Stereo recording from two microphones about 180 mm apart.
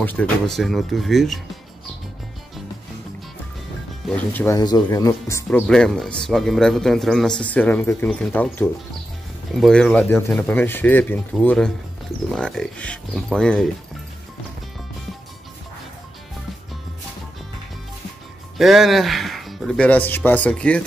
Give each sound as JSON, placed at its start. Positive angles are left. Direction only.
{"t": 0.0, "sound": "speech", "side_deg": 10}
{"t": 4.1, "sound": "speech", "side_deg": 10}
{"t": 4.6, "sound": "speech", "side_deg": 20}
{"t": 5.5, "sound": "speech", "side_deg": 5}
{"t": 18.6, "sound": "speech", "side_deg": 0}